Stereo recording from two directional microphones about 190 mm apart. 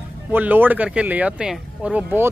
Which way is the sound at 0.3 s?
10° right (ahead or behind).